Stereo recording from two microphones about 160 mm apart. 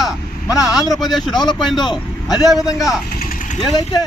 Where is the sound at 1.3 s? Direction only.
25° left (ahead or behind).